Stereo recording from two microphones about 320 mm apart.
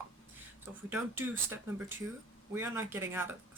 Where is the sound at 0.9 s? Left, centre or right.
Centre.